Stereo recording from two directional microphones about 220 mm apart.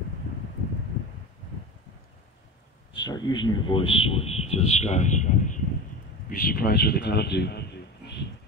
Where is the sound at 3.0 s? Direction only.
20° left (ahead or behind); by 8.3 s 50° left (ahead or behind).